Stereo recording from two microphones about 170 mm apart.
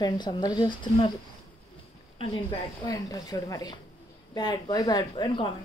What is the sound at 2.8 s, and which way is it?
Speech, 20° left (ahead or behind).